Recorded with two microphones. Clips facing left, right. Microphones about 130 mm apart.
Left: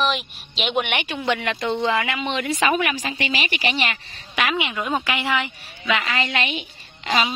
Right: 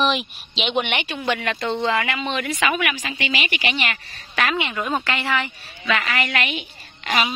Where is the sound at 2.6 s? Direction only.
35° left (ahead or behind).